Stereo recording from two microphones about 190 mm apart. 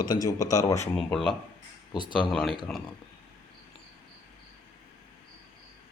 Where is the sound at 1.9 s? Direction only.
25° left (ahead or behind).